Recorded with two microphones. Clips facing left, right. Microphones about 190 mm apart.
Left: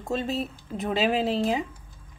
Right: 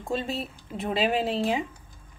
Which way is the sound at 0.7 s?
40° left (ahead or behind).